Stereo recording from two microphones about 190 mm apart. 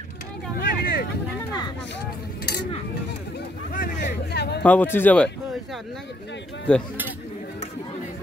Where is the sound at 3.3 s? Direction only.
55° left (ahead or behind).